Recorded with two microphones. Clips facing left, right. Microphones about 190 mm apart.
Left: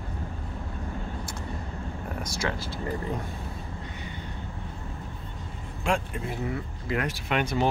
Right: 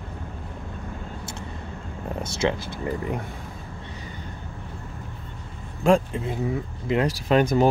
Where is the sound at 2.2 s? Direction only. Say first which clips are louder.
Right 7 dB; 25° right (ahead or behind).